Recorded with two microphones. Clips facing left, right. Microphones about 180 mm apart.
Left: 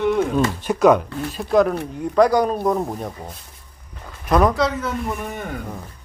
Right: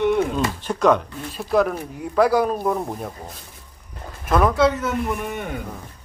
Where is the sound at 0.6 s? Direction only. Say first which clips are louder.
Left 3 dB; 10° left (ahead or behind).